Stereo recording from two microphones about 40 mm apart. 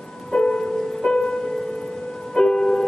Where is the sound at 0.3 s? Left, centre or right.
Centre.